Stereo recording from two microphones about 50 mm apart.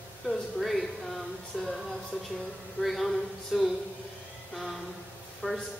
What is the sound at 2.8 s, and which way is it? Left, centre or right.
Speech, centre.